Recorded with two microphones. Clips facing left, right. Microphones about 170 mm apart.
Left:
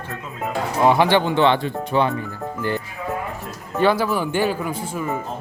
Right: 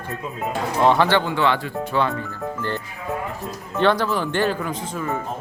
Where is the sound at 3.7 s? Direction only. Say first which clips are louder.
Left 1 dB; 5° left (ahead or behind).